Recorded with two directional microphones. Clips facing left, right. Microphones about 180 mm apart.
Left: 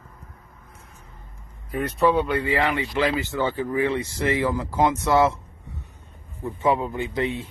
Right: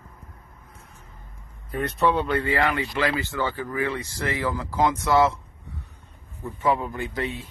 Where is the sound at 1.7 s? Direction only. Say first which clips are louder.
Left 2 dB; 5° left (ahead or behind); by 5.4 s 25° left (ahead or behind).